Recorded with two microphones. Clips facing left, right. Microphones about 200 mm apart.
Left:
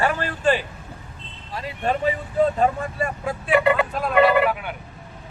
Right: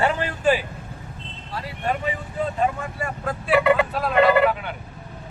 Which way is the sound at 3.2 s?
5° left (ahead or behind).